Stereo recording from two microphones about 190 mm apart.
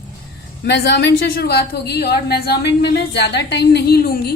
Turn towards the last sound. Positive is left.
turn(degrees=55)  # may be behind; listen again after turning